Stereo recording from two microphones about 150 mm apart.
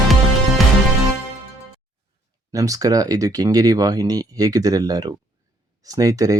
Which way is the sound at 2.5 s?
20° right (ahead or behind).